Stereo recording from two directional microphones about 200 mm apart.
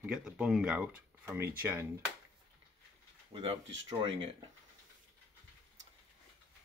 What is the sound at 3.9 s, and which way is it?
Speech, 25° right (ahead or behind).